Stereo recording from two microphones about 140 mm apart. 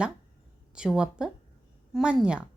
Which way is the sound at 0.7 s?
5° right (ahead or behind).